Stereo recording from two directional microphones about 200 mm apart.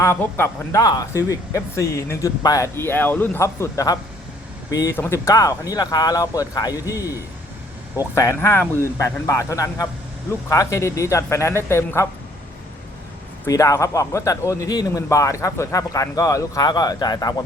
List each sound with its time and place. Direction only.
0.0 s speech: 10° left (ahead or behind)
7.9 s speech: 15° left (ahead or behind)
13.4 s speech: 15° left (ahead or behind)